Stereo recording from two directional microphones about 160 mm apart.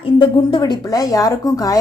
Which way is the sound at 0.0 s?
30° left (ahead or behind).